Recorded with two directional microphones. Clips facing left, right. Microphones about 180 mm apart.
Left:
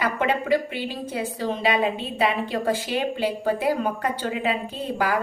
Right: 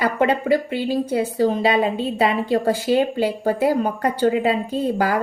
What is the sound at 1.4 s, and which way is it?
A woman's voice, 35° right (ahead or behind).